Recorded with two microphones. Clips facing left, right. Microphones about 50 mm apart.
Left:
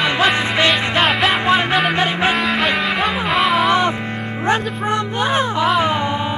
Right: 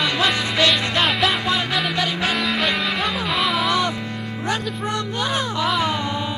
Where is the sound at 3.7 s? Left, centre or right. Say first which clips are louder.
Left 5 dB; left.